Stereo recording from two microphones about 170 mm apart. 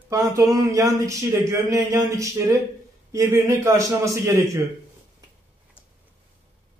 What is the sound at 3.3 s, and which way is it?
Speech, 15° right (ahead or behind).